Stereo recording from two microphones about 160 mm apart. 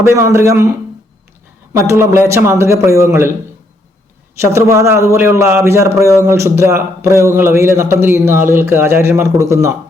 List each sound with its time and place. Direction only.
0.1 s a man's voice: 15° right (ahead or behind)
4.4 s a man's voice: 20° right (ahead or behind)